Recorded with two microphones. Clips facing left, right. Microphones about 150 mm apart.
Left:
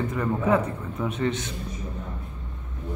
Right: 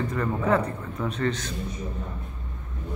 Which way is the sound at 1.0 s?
20° left (ahead or behind).